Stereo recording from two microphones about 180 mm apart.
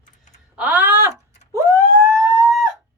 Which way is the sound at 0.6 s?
10° right (ahead or behind).